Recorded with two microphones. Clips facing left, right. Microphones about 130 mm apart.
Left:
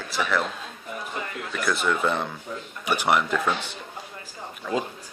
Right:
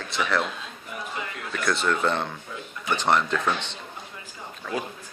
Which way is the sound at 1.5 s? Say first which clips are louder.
Even; 5° left (ahead or behind).